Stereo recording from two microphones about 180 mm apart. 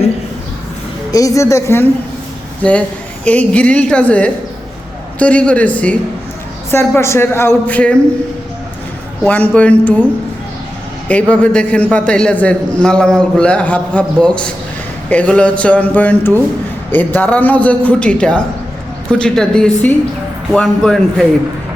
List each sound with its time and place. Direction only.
1.1 s a man's voice: 20° left (ahead or behind)
3.2 s a man's voice: 5° left (ahead or behind)
9.2 s a man's voice: 10° left (ahead or behind)
11.1 s a man's voice: 10° left (ahead or behind)